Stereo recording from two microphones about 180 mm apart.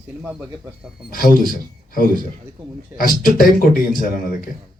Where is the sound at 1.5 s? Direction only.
50° left (ahead or behind).